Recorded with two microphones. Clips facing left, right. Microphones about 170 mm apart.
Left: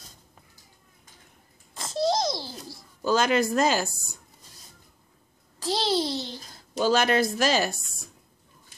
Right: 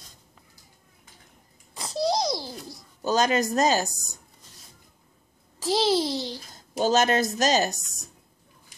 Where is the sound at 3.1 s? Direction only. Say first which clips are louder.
Even; 40° right (ahead or behind).